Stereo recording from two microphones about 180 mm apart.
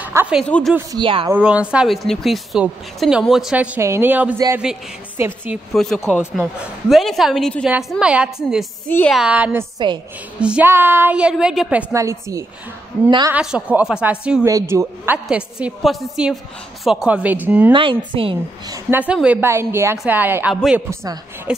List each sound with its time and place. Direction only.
0.0 s a sound: 10° right (ahead or behind)
0.4 s speech: 5° left (ahead or behind)
0.9 s a woman's voice: 30° right (ahead or behind)
1.3 s a woman's voice: 5° right (ahead or behind)
5.7 s speech: centre (ahead or behind)
8.8 s speech: 10° left (ahead or behind)
9.2 s a woman's voice: 10° right (ahead or behind)
11.9 s a woman's voice: 15° right (ahead or behind)
13.3 s a woman's voice: 5° right (ahead or behind)
14.4 s a woman's voice: 15° right (ahead or behind)
15.2 s a woman's voice: 5° right (ahead or behind)
17.7 s a woman's voice: 30° right (ahead or behind)
18.9 s a woman's voice: 10° right (ahead or behind)
21.5 s speech: 5° right (ahead or behind)